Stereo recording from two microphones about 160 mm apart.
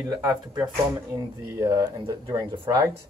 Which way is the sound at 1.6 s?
20° right (ahead or behind).